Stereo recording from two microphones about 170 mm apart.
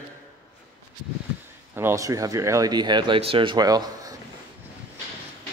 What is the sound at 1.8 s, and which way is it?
Speech, 15° right (ahead or behind).